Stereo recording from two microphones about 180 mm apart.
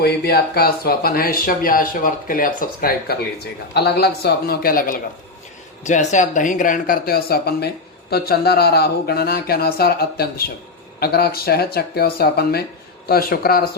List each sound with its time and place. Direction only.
0.0 s speech: 60° left (ahead or behind)
5.8 s speech: 40° left (ahead or behind); by 13.7 s 55° left (ahead or behind)